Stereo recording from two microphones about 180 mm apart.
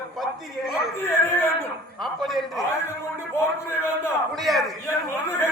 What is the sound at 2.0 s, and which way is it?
Speech, centre (ahead or behind).